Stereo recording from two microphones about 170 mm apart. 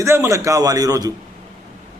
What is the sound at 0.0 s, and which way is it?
A man's voice, 15° right (ahead or behind).